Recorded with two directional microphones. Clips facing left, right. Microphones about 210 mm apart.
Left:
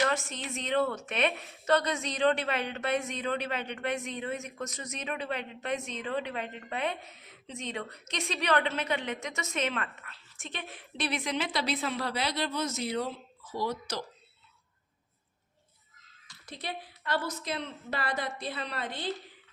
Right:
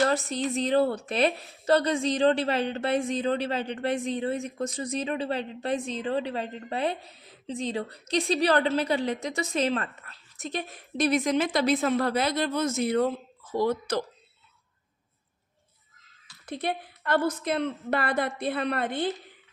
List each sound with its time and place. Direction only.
0.0 s a woman's voice: 35° right (ahead or behind); by 14.0 s 55° right (ahead or behind)
16.5 s a woman's voice: 55° right (ahead or behind)